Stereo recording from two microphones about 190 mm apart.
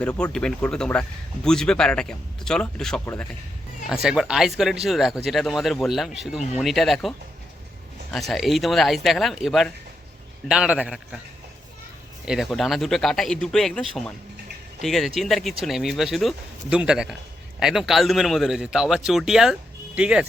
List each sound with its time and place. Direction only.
0.0 s speech: 5° left (ahead or behind)
8.1 s speech: centre (ahead or behind)
12.2 s speech: centre (ahead or behind)